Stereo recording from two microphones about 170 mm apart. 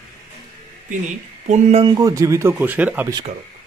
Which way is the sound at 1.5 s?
40° right (ahead or behind).